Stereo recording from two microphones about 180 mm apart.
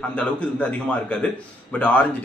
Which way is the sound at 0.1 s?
5° left (ahead or behind).